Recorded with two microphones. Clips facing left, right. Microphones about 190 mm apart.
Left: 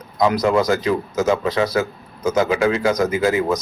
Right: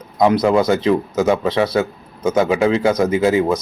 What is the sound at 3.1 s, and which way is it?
Speech, centre (ahead or behind).